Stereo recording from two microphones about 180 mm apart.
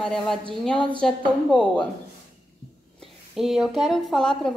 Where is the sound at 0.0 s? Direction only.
5° left (ahead or behind).